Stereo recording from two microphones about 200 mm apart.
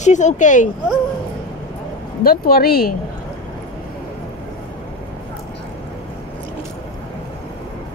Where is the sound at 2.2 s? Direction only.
50° left (ahead or behind).